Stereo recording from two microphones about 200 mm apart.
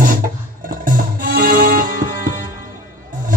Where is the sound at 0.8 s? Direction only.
45° right (ahead or behind).